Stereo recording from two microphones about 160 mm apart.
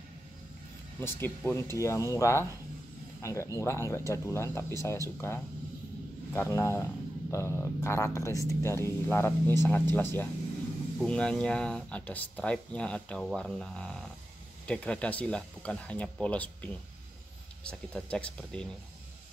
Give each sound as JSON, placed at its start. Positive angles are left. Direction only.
{"t": 1.0, "sound": "speech", "side_deg": 15}